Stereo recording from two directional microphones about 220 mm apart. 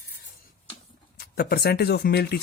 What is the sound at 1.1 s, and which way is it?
Speech, 45° left (ahead or behind).